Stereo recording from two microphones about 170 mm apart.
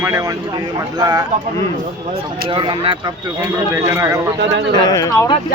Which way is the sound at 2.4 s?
30° right (ahead or behind).